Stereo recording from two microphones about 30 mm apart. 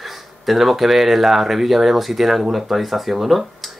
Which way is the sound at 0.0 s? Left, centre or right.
Centre.